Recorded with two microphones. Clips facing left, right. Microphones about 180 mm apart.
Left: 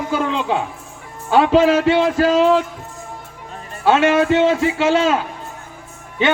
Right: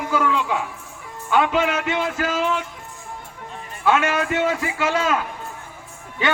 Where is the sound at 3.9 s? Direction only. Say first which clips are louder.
Left 6 dB; 30° left (ahead or behind).